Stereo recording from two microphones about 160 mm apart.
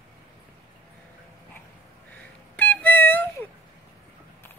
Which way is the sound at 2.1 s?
10° left (ahead or behind).